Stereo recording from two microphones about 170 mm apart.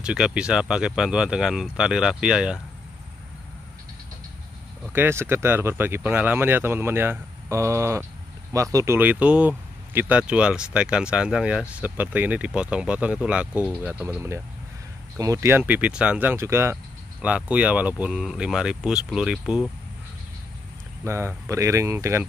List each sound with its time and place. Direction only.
0.0 s speech: 5° right (ahead or behind)
4.9 s speech: 10° right (ahead or behind)
21.0 s speech: 15° right (ahead or behind)